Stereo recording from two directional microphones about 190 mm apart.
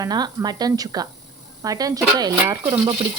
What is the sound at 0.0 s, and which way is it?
A woman's voice, 20° right (ahead or behind).